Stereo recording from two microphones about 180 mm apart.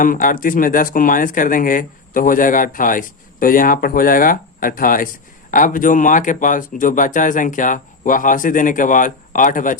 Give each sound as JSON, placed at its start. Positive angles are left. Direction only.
{"t": 0.0, "sound": "speech", "side_deg": 50}